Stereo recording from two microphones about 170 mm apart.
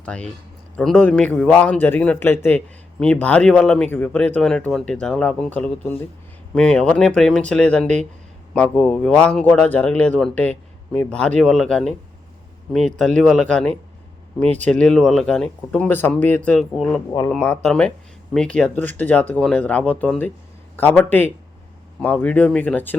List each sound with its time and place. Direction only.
0.0 s a man's voice: 5° left (ahead or behind)
17.1 s speech: 20° left (ahead or behind)
17.3 s a man's voice: 5° left (ahead or behind)